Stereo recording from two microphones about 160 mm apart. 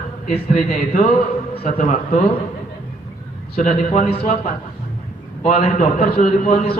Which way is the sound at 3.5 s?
60° left (ahead or behind).